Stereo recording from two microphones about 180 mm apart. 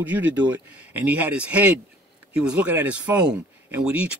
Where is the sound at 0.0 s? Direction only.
10° right (ahead or behind).